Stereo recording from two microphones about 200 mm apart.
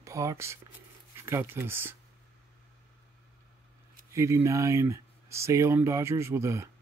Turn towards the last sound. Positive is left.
turn(degrees=-15)  # may be behind; listen again after turning